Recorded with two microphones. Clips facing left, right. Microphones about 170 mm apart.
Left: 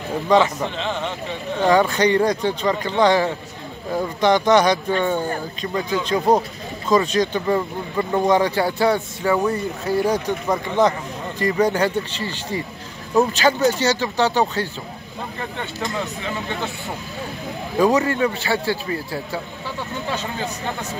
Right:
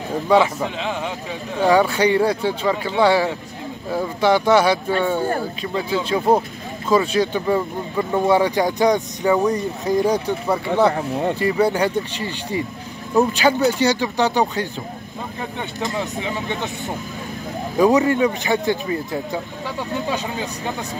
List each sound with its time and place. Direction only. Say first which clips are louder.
0.3 s speech: right 1 dB; 10° right (ahead or behind)
10.9 s speech: right 6 dB; 60° right (ahead or behind)
11.3 s speech: left 2 dB; 10° right (ahead or behind)
15.9 s speech: right 2 dB; 20° right (ahead or behind)
17.7 s speech: right 2 dB; 15° right (ahead or behind)